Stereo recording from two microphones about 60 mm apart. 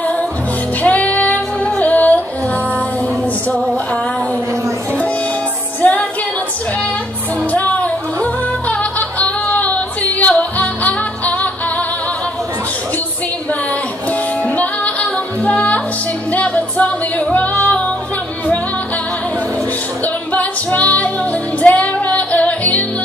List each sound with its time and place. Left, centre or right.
0.8 s music: left
5.8 s music: left
7.5 s music: left
14.4 s music: left
20.3 s music: left